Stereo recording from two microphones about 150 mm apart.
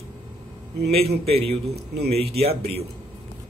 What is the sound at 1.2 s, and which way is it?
Speech, 40° right (ahead or behind).